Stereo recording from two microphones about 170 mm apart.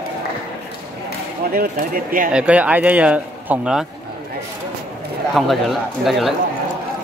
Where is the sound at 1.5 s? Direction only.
55° right (ahead or behind).